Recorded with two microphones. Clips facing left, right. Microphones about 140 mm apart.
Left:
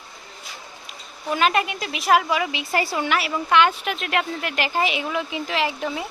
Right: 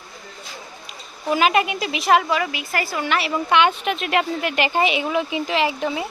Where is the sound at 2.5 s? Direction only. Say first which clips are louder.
Left 2 dB; 25° left (ahead or behind).